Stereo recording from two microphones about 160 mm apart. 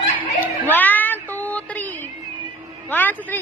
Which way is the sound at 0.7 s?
10° left (ahead or behind).